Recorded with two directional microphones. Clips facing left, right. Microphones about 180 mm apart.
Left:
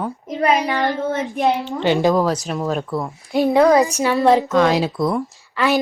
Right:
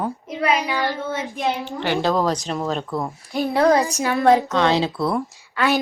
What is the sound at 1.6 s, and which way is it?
Speech, 20° left (ahead or behind).